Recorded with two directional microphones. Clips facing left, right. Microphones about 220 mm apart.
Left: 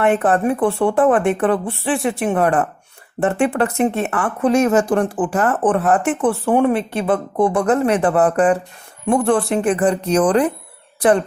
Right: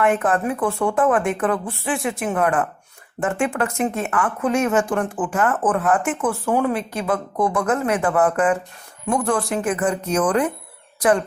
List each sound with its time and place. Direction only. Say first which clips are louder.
0.0 s speech: left 3 dB; 35° left (ahead or behind)